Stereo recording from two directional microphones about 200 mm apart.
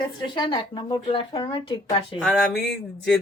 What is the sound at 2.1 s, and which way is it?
Speech, centre (ahead or behind).